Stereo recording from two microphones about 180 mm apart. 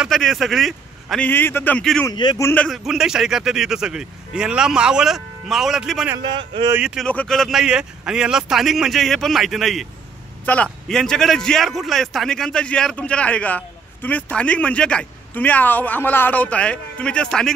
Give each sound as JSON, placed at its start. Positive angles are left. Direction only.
{"t": 0.0, "sound": "speech", "side_deg": 0}
{"t": 2.0, "sound": "a man's voice", "side_deg": 20}
{"t": 2.5, "sound": "speech", "side_deg": 5}
{"t": 6.3, "sound": "speech", "side_deg": -25}
{"t": 6.7, "sound": "a man's voice", "side_deg": -5}